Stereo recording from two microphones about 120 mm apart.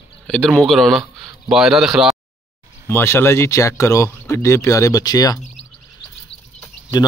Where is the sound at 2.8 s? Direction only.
20° left (ahead or behind).